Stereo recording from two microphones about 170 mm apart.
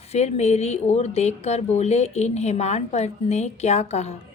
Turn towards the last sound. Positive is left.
turn(degrees=40)  # may be behind; listen again after turning